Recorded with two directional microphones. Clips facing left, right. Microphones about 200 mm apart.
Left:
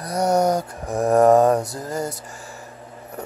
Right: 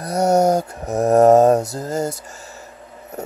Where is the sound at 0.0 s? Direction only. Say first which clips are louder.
Right 3 dB; 25° right (ahead or behind).